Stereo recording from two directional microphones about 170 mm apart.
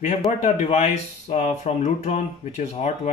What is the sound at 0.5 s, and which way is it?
Speech, 40° left (ahead or behind).